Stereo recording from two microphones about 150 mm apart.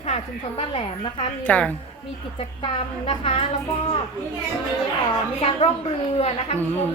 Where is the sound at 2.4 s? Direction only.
40° left (ahead or behind).